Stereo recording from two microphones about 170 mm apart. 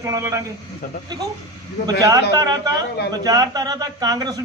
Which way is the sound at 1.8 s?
20° right (ahead or behind).